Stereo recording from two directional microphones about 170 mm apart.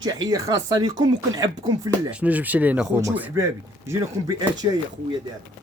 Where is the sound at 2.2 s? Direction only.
10° right (ahead or behind).